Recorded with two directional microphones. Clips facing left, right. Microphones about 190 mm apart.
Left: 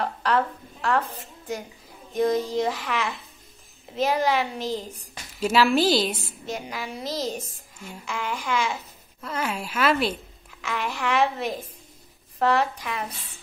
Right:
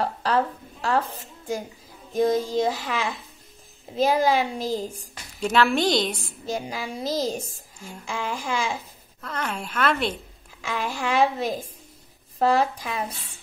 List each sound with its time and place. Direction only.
0.0 s a woman's voice: 35° right (ahead or behind)
2.1 s a child's voice: 30° right (ahead or behind)
5.4 s a woman's voice: 5° left (ahead or behind)
6.4 s a child's voice: 35° right (ahead or behind)
9.2 s a woman's voice: 5° left (ahead or behind)
10.6 s a child's voice: 30° right (ahead or behind)